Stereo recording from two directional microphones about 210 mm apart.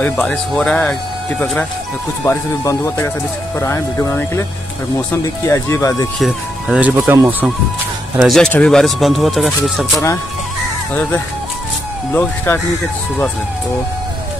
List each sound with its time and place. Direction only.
0.0 s speech: 5° left (ahead or behind)
6.1 s speech: centre (ahead or behind)
8.2 s speech: centre (ahead or behind)
12.1 s speech: 10° left (ahead or behind)